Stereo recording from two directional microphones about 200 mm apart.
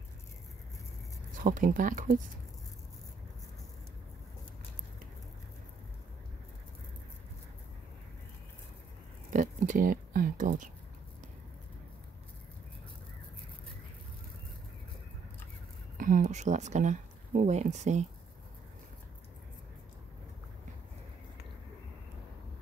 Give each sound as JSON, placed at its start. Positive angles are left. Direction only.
{"t": 1.3, "sound": "speech", "side_deg": -40}
{"t": 9.3, "sound": "a sound", "side_deg": -40}
{"t": 16.0, "sound": "speech", "side_deg": -40}